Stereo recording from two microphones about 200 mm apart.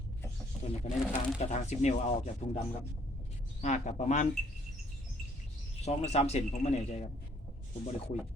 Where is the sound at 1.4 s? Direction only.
35° left (ahead or behind).